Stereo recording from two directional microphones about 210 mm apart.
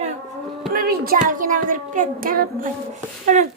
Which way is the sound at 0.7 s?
45° right (ahead or behind).